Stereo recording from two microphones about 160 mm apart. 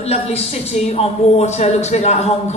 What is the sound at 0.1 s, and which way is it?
Speech, 40° left (ahead or behind).